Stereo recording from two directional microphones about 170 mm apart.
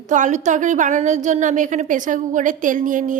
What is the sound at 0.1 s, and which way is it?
A woman's voice, 45° right (ahead or behind).